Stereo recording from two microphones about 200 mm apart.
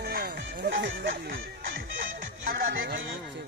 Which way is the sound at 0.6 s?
65° right (ahead or behind).